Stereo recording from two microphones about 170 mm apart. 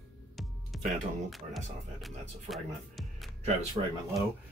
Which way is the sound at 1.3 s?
Centre (ahead or behind).